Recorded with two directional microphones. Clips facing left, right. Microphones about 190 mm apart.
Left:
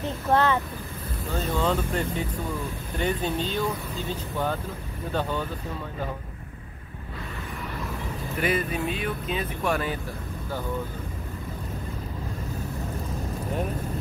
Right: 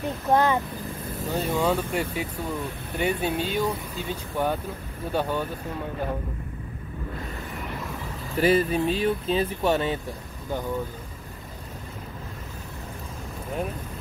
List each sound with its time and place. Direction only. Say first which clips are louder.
0.3 s speech: right 1 dB; 15° right (ahead or behind)
8.4 s speech: right 6 dB; 30° right (ahead or behind)